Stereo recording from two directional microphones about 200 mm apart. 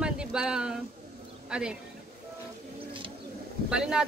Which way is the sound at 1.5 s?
5° right (ahead or behind).